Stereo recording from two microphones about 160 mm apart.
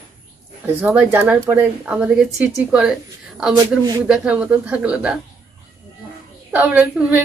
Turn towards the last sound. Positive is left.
turn(degrees=-10)  # may be behind; listen again after turning